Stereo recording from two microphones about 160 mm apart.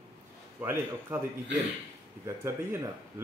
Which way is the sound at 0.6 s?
15° right (ahead or behind).